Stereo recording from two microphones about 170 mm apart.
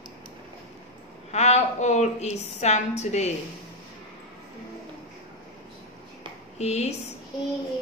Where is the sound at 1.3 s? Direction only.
40° left (ahead or behind).